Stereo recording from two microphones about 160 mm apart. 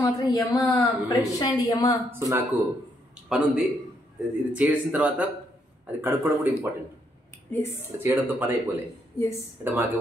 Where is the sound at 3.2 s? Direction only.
5° right (ahead or behind).